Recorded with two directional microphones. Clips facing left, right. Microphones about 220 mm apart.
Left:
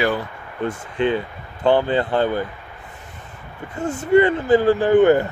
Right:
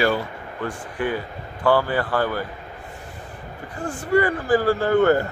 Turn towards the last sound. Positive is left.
turn(degrees=15)  # may be behind; listen again after turning